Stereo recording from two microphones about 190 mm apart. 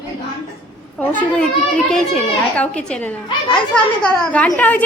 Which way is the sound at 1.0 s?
10° left (ahead or behind).